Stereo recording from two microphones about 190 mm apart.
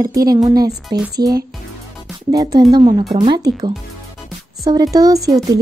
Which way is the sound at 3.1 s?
20° right (ahead or behind).